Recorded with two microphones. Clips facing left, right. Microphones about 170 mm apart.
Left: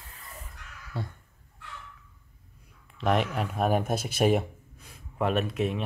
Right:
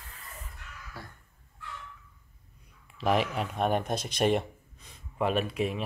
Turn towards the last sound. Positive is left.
turn(degrees=0)  # may be behind; listen again after turning